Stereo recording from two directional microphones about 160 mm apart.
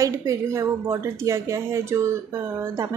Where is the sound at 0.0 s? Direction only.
20° right (ahead or behind).